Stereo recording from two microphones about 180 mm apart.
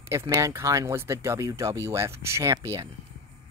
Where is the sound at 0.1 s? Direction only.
15° right (ahead or behind).